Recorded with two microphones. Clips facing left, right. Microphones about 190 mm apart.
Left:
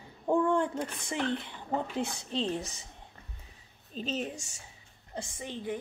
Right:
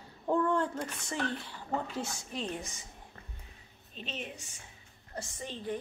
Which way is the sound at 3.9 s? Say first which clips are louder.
Left 8 dB; 40° left (ahead or behind).